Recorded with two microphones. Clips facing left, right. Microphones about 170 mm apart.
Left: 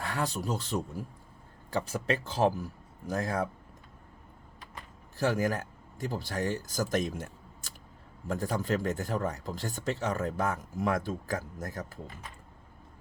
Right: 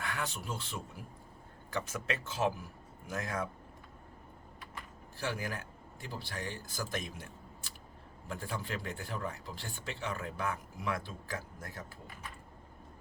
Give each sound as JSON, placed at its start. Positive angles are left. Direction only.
{"t": 0.0, "sound": "speech", "side_deg": 35}
{"t": 5.1, "sound": "speech", "side_deg": 45}